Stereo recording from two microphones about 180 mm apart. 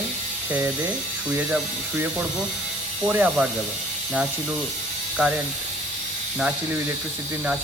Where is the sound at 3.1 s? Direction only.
10° right (ahead or behind).